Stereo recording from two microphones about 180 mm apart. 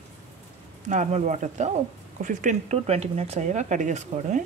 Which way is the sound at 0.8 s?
45° right (ahead or behind).